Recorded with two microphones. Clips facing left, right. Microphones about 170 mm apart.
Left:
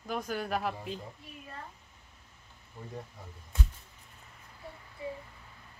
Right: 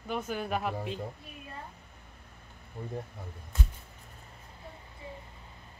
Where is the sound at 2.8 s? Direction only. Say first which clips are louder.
Right 5 dB; 60° right (ahead or behind).